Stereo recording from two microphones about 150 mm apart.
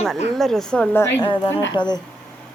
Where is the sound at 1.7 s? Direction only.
30° left (ahead or behind).